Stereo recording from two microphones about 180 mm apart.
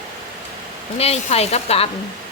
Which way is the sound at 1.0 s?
35° left (ahead or behind).